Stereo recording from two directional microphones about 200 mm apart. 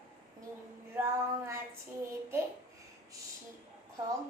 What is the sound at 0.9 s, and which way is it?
Female singing, 10° right (ahead or behind).